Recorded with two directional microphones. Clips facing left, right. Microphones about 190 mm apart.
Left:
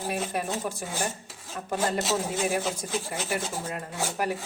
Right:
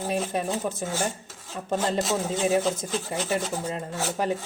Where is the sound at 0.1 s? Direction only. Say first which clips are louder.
Right 3 dB; 25° right (ahead or behind).